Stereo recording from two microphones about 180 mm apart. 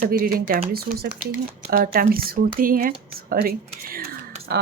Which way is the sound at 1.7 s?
55° right (ahead or behind).